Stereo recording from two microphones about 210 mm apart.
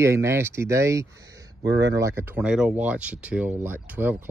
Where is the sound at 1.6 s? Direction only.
55° right (ahead or behind).